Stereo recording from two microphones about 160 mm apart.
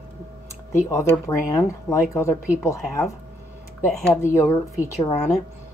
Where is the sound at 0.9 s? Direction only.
20° left (ahead or behind).